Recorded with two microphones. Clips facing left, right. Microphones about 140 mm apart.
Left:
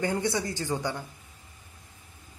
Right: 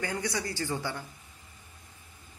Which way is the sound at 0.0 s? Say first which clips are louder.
Left 5 dB; 25° left (ahead or behind).